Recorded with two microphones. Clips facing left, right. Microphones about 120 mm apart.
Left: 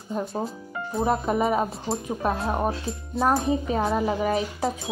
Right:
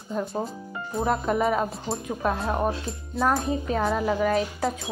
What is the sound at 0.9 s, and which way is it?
Speech, 10° left (ahead or behind).